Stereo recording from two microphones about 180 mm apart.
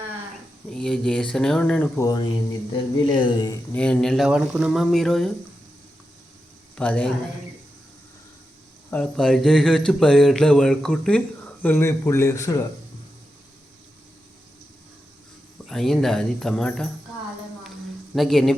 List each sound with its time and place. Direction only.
0.7 s speech: 5° left (ahead or behind)
2.0 s speech: 20° left (ahead or behind)
3.7 s speech: 5° left (ahead or behind)
6.7 s a man's voice: 5° left (ahead or behind)
8.9 s speech: 5° left (ahead or behind)
15.6 s speech: centre (ahead or behind)
18.1 s speech: centre (ahead or behind)